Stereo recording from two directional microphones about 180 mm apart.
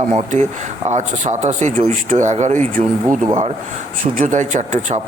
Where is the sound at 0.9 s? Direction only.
40° right (ahead or behind).